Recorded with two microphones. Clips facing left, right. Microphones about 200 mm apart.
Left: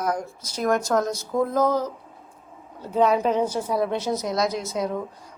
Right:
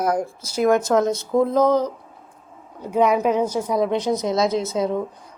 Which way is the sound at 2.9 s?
10° right (ahead or behind).